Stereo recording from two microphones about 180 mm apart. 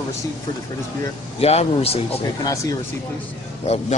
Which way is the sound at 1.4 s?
35° left (ahead or behind).